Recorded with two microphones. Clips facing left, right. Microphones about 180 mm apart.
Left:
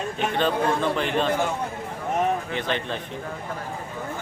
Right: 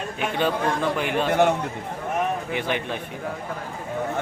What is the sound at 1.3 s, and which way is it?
Speech, 65° right (ahead or behind).